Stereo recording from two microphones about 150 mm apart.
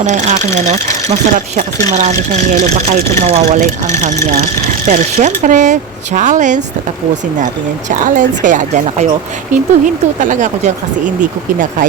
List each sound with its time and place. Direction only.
0.0 s speech: 50° right (ahead or behind)
7.9 s speech: 60° right (ahead or behind)